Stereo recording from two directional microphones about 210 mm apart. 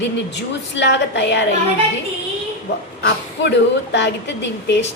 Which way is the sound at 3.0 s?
55° left (ahead or behind).